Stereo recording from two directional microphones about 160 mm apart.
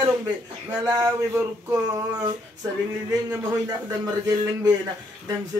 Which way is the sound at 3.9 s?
25° right (ahead or behind).